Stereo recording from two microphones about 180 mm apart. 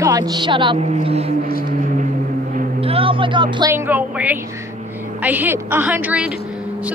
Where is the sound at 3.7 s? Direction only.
10° right (ahead or behind).